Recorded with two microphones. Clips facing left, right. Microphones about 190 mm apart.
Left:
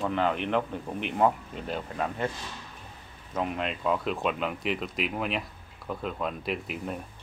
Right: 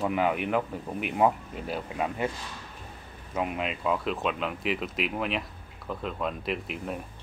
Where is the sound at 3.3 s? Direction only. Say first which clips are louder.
Even; 5° right (ahead or behind).